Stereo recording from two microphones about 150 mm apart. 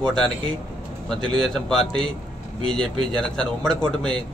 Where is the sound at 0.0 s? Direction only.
5° left (ahead or behind).